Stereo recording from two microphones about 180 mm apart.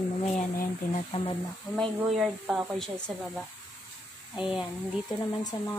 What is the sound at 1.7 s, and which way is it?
Speech, 20° left (ahead or behind).